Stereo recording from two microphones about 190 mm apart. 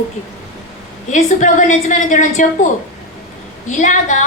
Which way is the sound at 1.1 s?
40° left (ahead or behind).